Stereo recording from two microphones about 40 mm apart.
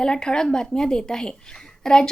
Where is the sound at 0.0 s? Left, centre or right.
Centre.